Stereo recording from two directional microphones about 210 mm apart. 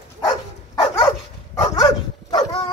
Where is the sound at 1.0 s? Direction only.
15° left (ahead or behind).